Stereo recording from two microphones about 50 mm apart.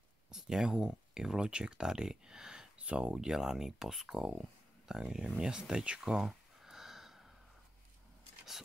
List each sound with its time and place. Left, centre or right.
0.3 s speech: centre
3.3 s speech: centre
5.4 s a sound: centre